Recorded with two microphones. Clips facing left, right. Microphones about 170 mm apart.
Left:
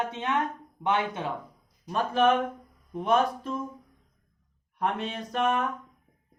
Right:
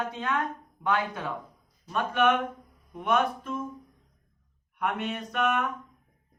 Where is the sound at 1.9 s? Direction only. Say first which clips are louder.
Left 1 dB; 35° left (ahead or behind).